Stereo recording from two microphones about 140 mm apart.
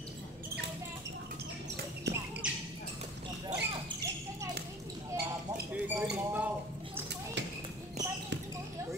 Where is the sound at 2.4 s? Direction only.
10° right (ahead or behind).